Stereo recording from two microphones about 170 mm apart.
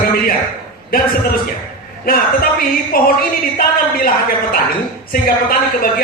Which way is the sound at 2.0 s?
60° left (ahead or behind).